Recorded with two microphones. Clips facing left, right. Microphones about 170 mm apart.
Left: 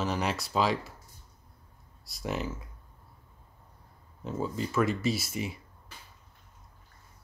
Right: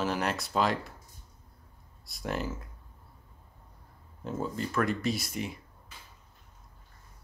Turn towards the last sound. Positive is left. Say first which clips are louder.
# left 1 dB
turn(degrees=5)  # may be behind; listen again after turning